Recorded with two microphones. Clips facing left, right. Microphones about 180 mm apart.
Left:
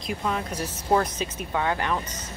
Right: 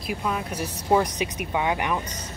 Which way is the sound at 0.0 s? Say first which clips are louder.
Even; 5° right (ahead or behind).